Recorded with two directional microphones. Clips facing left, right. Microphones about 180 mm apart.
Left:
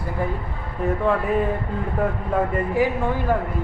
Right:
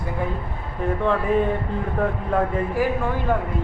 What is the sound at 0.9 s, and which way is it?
Speech, 5° left (ahead or behind).